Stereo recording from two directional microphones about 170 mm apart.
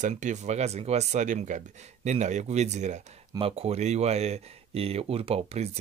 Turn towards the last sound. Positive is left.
turn(degrees=-40)  # may be behind; listen again after turning